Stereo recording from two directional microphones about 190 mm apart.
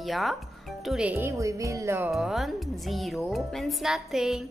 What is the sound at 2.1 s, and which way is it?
Speech, centre (ahead or behind).